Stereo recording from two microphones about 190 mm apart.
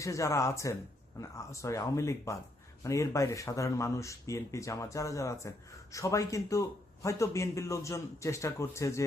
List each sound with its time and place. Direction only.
0.0 s a man's voice: 15° left (ahead or behind)